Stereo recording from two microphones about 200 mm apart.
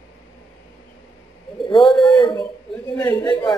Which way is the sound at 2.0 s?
20° left (ahead or behind).